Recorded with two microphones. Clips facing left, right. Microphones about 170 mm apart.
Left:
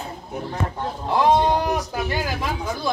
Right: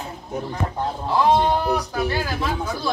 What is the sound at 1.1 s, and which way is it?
Speech, 15° left (ahead or behind).